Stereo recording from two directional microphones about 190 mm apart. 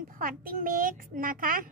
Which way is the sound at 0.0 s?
50° right (ahead or behind).